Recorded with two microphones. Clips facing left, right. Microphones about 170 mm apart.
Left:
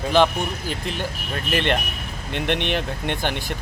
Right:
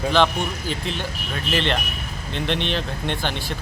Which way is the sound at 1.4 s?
55° left (ahead or behind).